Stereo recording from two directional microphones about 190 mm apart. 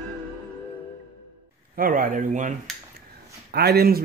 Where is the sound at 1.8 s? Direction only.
45° right (ahead or behind).